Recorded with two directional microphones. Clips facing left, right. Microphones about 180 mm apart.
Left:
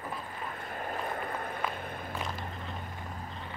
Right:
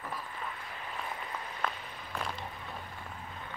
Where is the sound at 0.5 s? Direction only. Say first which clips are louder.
Left 6 dB; 50° left (ahead or behind).